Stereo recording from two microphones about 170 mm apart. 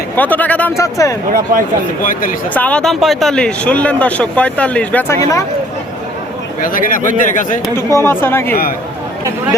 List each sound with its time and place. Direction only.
0.2 s speech: 10° left (ahead or behind)
1.3 s speech: 55° right (ahead or behind)
2.0 s speech: 55° left (ahead or behind)
2.5 s speech: 10° left (ahead or behind)
6.6 s speech: 55° left (ahead or behind)
7.9 s speech: 20° right (ahead or behind)
8.1 s speech: 15° left (ahead or behind)